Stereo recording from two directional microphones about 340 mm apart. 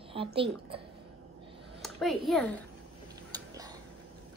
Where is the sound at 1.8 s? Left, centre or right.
Centre.